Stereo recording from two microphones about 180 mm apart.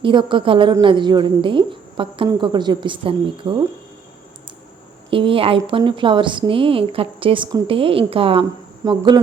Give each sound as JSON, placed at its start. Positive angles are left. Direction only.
{"t": 0.0, "sound": "a woman's voice", "side_deg": -25}
{"t": 5.1, "sound": "a woman's voice", "side_deg": -30}